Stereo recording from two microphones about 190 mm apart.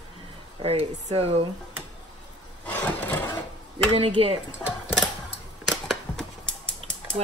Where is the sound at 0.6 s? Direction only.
30° right (ahead or behind).